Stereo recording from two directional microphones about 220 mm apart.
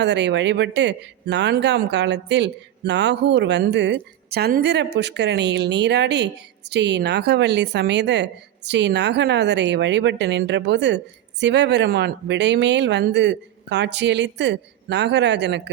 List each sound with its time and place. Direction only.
0.0 s speech: 50° right (ahead or behind)